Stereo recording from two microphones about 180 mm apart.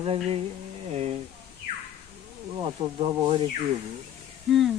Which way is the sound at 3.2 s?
30° right (ahead or behind).